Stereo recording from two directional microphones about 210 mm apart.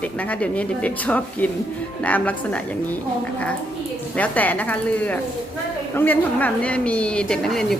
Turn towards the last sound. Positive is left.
turn(degrees=0)  # may be behind; listen again after turning